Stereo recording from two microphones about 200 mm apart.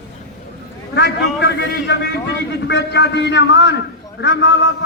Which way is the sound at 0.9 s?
60° left (ahead or behind).